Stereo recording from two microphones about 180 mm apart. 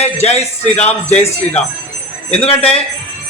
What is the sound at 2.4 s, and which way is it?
Speech, 35° left (ahead or behind).